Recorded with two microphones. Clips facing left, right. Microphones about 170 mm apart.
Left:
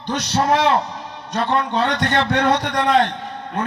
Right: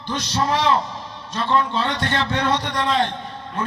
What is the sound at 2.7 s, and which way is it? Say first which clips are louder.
Speech: left 4 dB; 65° left (ahead or behind).